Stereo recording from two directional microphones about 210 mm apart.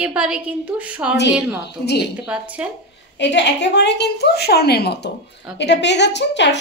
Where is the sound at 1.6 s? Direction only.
50° left (ahead or behind).